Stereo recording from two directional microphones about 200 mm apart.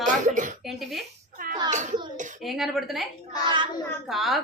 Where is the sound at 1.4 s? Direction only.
45° right (ahead or behind).